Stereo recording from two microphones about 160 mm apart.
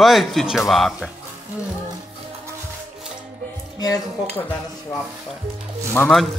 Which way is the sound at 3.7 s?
25° left (ahead or behind).